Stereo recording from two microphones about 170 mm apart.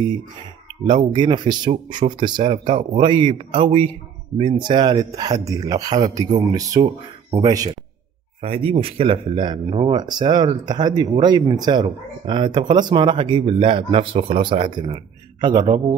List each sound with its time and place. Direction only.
0.8 s a man's voice: 25° right (ahead or behind)
7.2 s speech: 35° right (ahead or behind)